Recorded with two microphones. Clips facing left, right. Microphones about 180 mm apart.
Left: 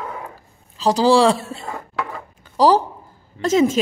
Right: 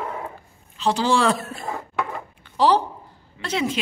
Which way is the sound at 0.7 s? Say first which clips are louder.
Left 6 dB; 35° left (ahead or behind).